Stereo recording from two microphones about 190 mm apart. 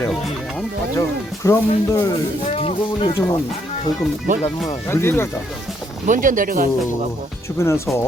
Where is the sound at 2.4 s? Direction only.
30° left (ahead or behind).